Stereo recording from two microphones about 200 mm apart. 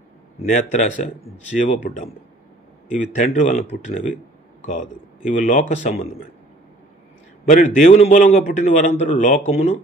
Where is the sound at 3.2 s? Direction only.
35° left (ahead or behind).